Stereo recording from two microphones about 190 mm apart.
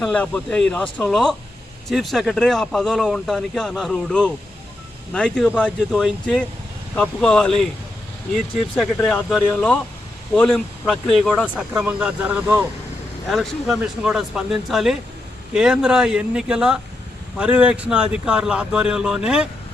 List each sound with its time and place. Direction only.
0.0 s speech: 5° left (ahead or behind)
8.7 s speech: 5° left (ahead or behind)